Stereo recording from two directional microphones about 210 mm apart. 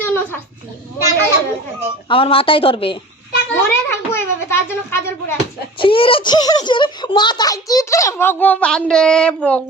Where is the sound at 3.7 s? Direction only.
10° left (ahead or behind).